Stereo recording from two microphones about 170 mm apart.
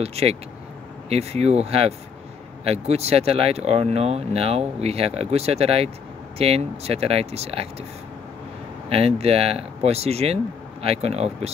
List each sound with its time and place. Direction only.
0.0 s speech: 35° right (ahead or behind)
8.8 s speech: 35° right (ahead or behind)